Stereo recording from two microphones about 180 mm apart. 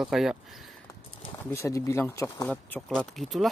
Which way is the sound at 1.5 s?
15° left (ahead or behind).